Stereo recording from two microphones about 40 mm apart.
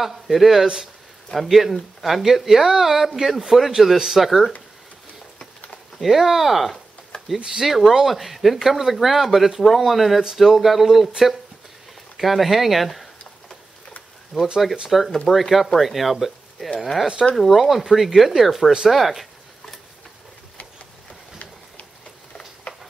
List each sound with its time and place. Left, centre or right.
0.0 s speech: centre
5.9 s speech: centre
7.3 s speech: centre
7.6 s speech: centre
14.3 s speech: centre